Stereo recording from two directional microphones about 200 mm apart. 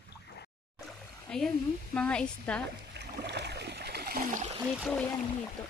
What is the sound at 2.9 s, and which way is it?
Splash, 55° right (ahead or behind).